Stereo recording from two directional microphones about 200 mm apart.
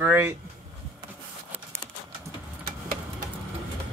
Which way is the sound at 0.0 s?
10° right (ahead or behind).